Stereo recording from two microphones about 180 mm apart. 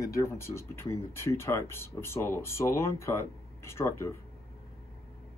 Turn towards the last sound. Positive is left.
turn(degrees=15)  # may be behind; listen again after turning